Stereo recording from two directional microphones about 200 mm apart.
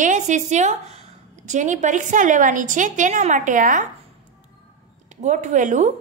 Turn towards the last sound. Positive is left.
turn(degrees=-40)  # may be behind; listen again after turning